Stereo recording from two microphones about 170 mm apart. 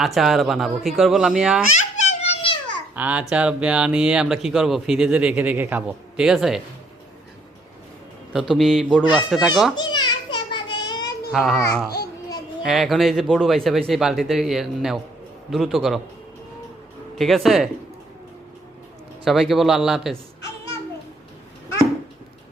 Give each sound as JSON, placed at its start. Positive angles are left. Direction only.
{"t": 0.0, "sound": "speech", "side_deg": 0}
{"t": 1.7, "sound": "a sound", "side_deg": 40}
{"t": 2.9, "sound": "speech", "side_deg": -10}
{"t": 8.3, "sound": "speech", "side_deg": 0}
{"t": 9.7, "sound": "a sound", "side_deg": 25}
{"t": 11.3, "sound": "speech", "side_deg": 0}
{"t": 17.2, "sound": "speech", "side_deg": 0}
{"t": 19.2, "sound": "speech", "side_deg": 0}